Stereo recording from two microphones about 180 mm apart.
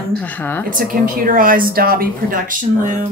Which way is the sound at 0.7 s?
50° right (ahead or behind).